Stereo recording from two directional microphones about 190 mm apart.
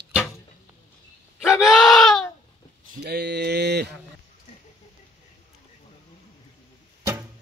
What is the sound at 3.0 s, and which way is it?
Mantra, 60° right (ahead or behind).